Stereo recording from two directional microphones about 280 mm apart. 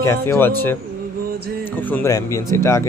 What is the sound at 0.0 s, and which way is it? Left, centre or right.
Speech, centre.